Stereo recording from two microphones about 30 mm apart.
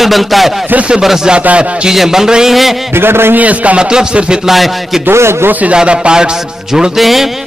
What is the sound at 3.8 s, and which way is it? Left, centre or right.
Speech, right.